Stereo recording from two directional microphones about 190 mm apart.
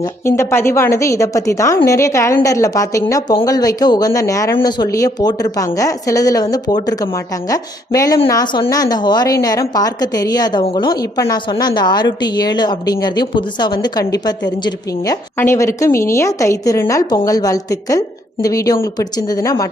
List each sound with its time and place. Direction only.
0.0 s a woman's voice: 15° left (ahead or behind)